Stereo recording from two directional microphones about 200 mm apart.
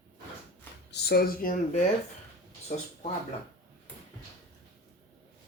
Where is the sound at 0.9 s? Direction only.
55° left (ahead or behind).